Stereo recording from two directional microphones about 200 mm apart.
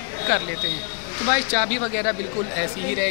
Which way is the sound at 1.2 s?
Centre (ahead or behind).